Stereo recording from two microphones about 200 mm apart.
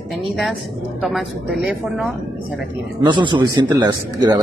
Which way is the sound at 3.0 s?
25° right (ahead or behind).